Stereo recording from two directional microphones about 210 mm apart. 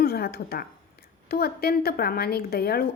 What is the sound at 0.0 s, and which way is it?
A woman's voice, 45° left (ahead or behind).